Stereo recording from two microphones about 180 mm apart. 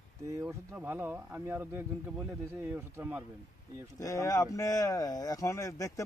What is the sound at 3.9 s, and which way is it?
Speech, 20° left (ahead or behind).